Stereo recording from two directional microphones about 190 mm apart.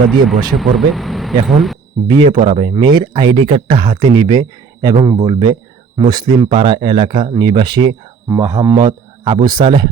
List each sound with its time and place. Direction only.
0.5 s speech: centre (ahead or behind)
2.0 s speech: 25° right (ahead or behind)